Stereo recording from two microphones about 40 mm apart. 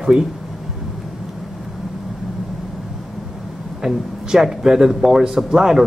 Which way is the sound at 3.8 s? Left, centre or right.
Centre.